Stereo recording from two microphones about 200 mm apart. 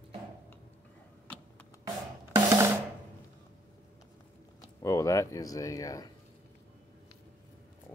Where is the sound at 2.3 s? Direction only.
15° right (ahead or behind).